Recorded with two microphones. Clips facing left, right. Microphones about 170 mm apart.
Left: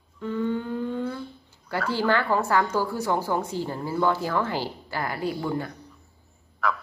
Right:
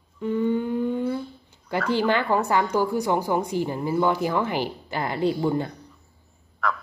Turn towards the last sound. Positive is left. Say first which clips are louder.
# even
turn(degrees=0)  # may be behind; listen again after turning